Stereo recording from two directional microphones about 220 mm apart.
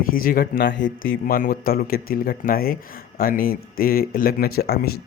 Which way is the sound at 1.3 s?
40° left (ahead or behind).